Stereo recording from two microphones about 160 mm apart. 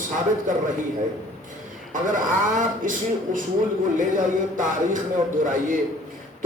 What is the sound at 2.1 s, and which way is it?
Music, 55° right (ahead or behind).